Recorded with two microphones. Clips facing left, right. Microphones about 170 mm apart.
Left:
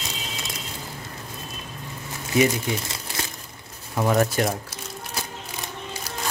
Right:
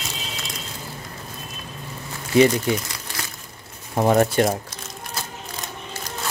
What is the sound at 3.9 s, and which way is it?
Speech, 30° right (ahead or behind).